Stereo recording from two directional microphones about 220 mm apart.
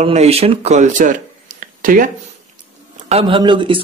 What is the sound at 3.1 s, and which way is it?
Speech, 25° right (ahead or behind).